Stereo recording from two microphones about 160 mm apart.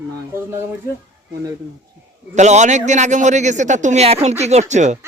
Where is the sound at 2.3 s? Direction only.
45° right (ahead or behind).